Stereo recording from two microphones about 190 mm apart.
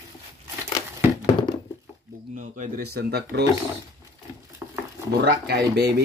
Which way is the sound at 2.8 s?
60° right (ahead or behind).